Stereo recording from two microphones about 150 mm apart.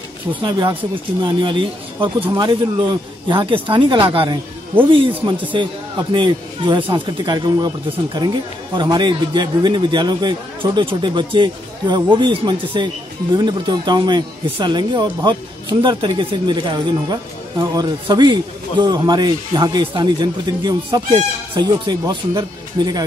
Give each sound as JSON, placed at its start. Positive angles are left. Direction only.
{"t": 0.3, "sound": "speech", "side_deg": -30}